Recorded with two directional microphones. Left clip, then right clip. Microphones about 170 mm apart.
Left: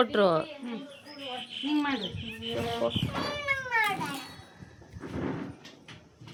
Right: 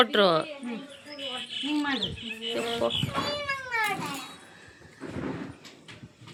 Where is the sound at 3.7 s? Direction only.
20° right (ahead or behind).